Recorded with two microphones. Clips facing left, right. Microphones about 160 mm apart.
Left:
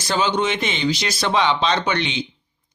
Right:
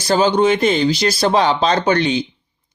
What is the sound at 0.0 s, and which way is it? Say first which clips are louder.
Speech: right 7 dB; 35° right (ahead or behind).